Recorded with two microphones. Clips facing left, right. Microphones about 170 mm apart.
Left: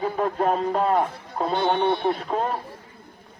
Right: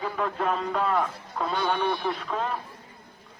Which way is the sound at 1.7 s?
25° left (ahead or behind).